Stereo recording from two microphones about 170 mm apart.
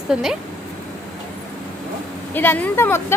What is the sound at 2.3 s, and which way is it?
Speech, 10° left (ahead or behind).